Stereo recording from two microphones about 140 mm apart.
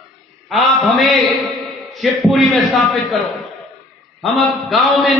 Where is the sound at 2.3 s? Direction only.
Centre (ahead or behind).